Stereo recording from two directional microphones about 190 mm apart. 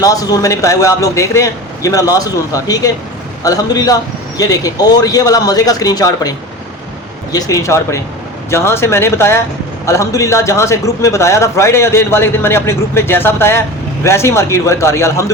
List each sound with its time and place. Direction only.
0.0 s a man's voice: 20° left (ahead or behind)
7.3 s a man's voice: 15° left (ahead or behind)